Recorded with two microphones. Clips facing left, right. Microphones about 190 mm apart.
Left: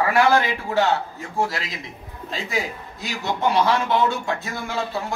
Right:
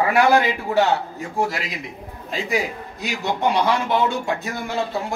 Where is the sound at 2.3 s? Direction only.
15° right (ahead or behind).